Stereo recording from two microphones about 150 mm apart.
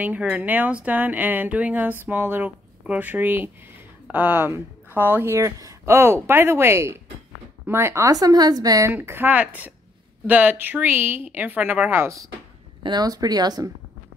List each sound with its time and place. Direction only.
0.0 s speech: 10° right (ahead or behind); by 13.7 s 25° right (ahead or behind)